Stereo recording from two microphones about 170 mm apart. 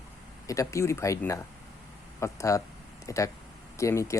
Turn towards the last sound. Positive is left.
turn(degrees=15)  # may be behind; listen again after turning